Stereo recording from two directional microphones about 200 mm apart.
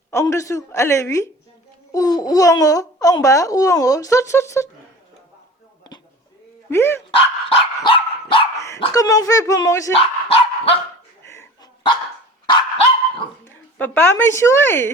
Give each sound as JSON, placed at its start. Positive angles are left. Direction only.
{"t": 0.1, "sound": "a child's voice", "side_deg": 15}
{"t": 6.7, "sound": "a child's voice", "side_deg": 10}
{"t": 7.9, "sound": "dog", "side_deg": 25}
{"t": 8.5, "sound": "dog", "side_deg": 15}
{"t": 8.8, "sound": "a child's voice", "side_deg": 15}
{"t": 9.9, "sound": "dog", "side_deg": 30}
{"t": 11.3, "sound": "dog", "side_deg": 15}
{"t": 12.5, "sound": "dog", "side_deg": 25}
{"t": 13.4, "sound": "speech", "side_deg": 10}